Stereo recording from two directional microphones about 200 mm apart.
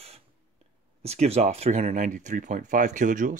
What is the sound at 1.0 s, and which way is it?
Speech, 30° right (ahead or behind).